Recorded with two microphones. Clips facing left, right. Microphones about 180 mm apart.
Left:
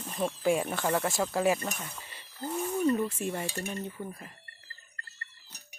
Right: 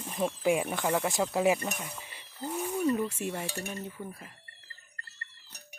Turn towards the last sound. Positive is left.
turn(degrees=-5)  # may be behind; listen again after turning